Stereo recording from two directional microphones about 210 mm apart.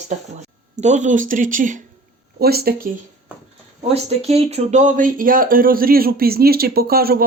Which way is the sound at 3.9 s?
30° right (ahead or behind).